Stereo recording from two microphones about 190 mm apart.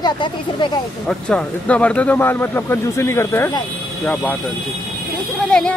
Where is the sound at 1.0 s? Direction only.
5° left (ahead or behind).